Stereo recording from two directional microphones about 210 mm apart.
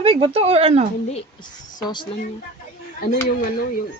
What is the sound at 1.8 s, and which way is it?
Speech, 20° left (ahead or behind).